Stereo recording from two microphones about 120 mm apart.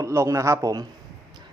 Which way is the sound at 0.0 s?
25° right (ahead or behind).